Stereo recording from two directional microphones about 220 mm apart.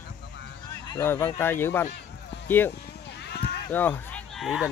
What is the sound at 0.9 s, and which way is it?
Speech, 10° left (ahead or behind).